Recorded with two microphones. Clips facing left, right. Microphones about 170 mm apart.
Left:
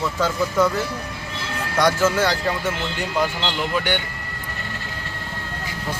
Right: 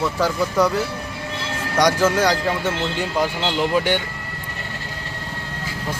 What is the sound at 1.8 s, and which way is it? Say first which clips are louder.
Speech: right 1 dB; 15° right (ahead or behind).